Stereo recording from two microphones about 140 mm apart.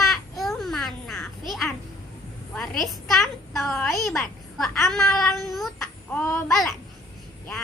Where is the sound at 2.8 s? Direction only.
Centre (ahead or behind).